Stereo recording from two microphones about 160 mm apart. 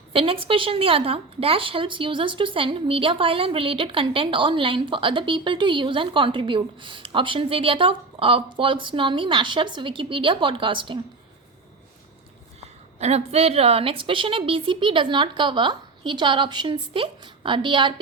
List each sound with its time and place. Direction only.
0.1 s speech: 35° right (ahead or behind)
13.0 s speech: 40° right (ahead or behind)